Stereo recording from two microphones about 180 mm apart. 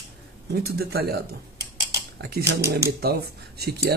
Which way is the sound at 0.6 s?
60° right (ahead or behind).